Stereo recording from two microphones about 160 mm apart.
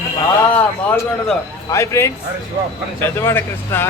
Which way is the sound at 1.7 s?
15° left (ahead or behind).